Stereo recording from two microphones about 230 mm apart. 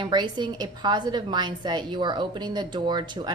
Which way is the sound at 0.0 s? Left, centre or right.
Centre.